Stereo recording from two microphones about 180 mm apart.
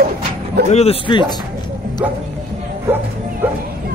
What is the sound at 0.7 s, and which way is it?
Speech, 35° left (ahead or behind).